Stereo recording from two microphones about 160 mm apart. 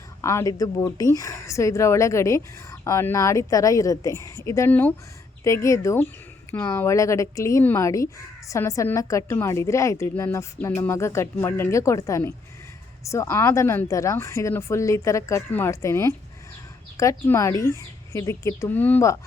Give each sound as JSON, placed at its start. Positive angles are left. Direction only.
{"t": 0.2, "sound": "a woman's voice", "side_deg": 15}